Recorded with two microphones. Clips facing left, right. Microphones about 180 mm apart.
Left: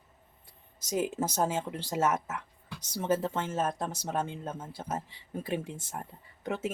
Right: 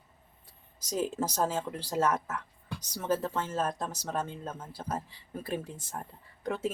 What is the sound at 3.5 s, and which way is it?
Speech, 10° left (ahead or behind).